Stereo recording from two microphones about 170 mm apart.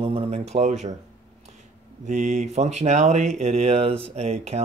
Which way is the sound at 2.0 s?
45° right (ahead or behind).